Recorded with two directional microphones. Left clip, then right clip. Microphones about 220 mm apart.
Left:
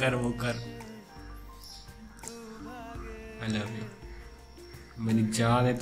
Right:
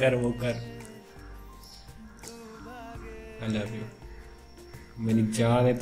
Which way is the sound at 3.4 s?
15° left (ahead or behind).